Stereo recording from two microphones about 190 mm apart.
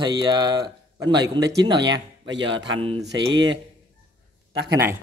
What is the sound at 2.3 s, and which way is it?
Speech, 75° right (ahead or behind).